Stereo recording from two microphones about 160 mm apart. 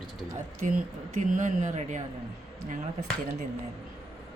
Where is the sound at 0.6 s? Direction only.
50° right (ahead or behind).